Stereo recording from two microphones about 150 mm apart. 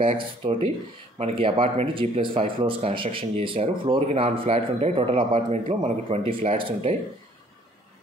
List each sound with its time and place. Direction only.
0.0 s speech: 35° right (ahead or behind)